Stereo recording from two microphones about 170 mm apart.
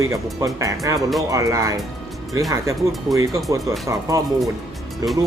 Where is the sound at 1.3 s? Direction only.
20° right (ahead or behind).